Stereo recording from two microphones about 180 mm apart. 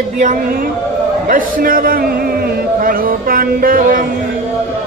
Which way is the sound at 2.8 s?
50° right (ahead or behind).